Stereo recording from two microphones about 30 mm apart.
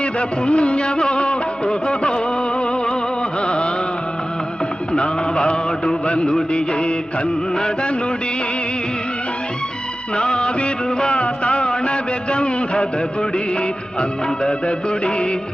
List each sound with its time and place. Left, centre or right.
0.0 s music: left
3.4 s carnatic music: left
4.9 s mantra: left
6.5 s music: left
10.2 s music: left